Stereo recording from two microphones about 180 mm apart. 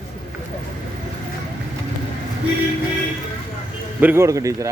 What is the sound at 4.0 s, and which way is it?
Speech, 10° right (ahead or behind).